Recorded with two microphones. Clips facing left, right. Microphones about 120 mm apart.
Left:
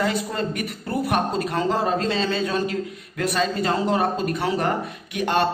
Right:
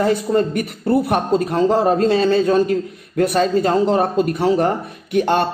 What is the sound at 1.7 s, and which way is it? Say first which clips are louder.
A man's voice: right 8 dB; 50° right (ahead or behind).